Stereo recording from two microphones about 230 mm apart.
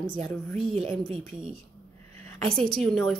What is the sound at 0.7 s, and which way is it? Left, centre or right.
Speech, right.